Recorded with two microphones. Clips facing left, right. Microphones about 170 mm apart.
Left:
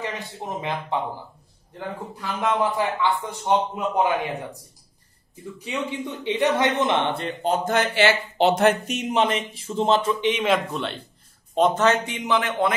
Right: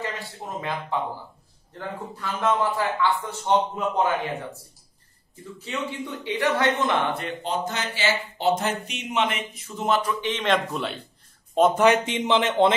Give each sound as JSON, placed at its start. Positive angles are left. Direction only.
{"t": 0.0, "sound": "a man's voice", "side_deg": 20}
{"t": 5.6, "sound": "a man's voice", "side_deg": 15}
{"t": 7.4, "sound": "speech", "side_deg": 55}
{"t": 8.8, "sound": "a man's voice", "side_deg": 40}
{"t": 10.3, "sound": "a man's voice", "side_deg": 5}
{"t": 11.8, "sound": "speech", "side_deg": -15}
{"t": 12.3, "sound": "a man's voice", "side_deg": -25}